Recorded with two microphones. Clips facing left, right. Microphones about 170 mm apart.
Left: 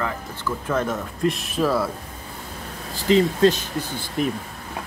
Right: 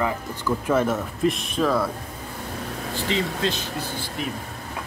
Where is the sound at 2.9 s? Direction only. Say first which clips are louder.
Left 8 dB; 40° left (ahead or behind).